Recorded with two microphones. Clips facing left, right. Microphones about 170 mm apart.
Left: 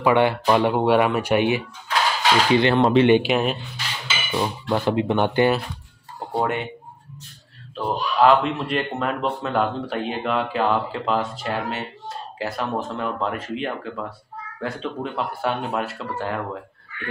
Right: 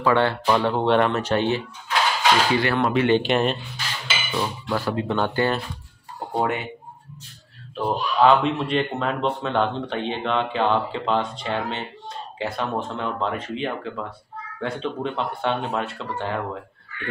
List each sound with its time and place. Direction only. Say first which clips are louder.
0.0 s speech: left 2 dB; 15° left (ahead or behind)
2.5 s speech: left 4 dB; 20° left (ahead or behind)
3.2 s speech: even; 5° left (ahead or behind)
4.4 s speech: left 3 dB; 20° left (ahead or behind)
6.3 s speech: left 1 dB; centre (ahead or behind)
7.7 s speech: even; centre (ahead or behind)